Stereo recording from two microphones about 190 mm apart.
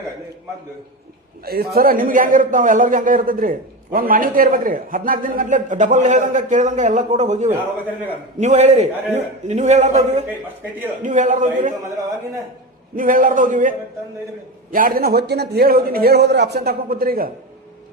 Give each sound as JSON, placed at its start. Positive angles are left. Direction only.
{"t": 1.5, "sound": "a man's voice", "side_deg": -55}
{"t": 13.0, "sound": "a man's voice", "side_deg": -45}